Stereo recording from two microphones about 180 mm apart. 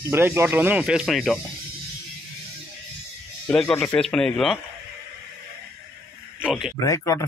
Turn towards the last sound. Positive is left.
turn(degrees=15)  # may be behind; listen again after turning